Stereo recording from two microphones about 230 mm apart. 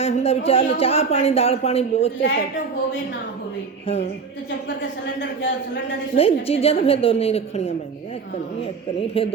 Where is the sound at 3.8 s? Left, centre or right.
Left.